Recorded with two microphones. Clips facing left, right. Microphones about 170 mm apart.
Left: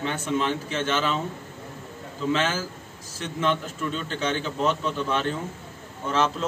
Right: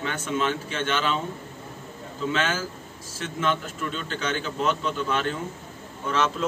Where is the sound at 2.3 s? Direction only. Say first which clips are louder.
Left 2 dB; 30° left (ahead or behind).